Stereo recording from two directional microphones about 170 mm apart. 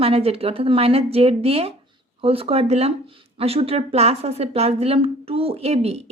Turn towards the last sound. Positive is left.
turn(degrees=-35)  # may be behind; listen again after turning